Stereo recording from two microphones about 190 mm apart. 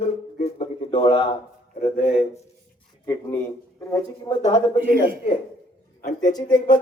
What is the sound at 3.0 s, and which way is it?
Speech, 15° left (ahead or behind).